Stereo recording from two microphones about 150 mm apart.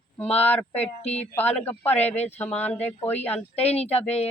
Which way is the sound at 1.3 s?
10° left (ahead or behind).